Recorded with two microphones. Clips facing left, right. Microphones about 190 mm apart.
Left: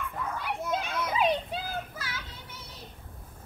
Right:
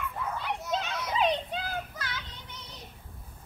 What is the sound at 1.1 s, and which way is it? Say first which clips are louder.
Children playing: even; 10° left (ahead or behind).